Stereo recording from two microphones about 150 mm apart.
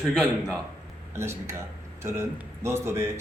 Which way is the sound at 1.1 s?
20° right (ahead or behind).